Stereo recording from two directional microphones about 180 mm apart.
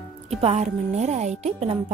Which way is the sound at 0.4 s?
35° right (ahead or behind).